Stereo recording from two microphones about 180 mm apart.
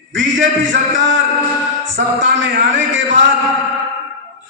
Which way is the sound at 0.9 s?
90° right.